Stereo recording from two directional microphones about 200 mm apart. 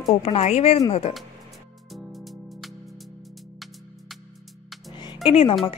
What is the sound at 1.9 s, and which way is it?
Music, centre (ahead or behind).